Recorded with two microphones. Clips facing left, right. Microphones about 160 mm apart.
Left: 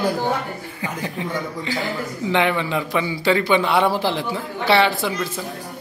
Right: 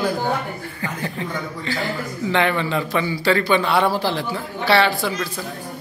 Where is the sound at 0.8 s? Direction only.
15° left (ahead or behind).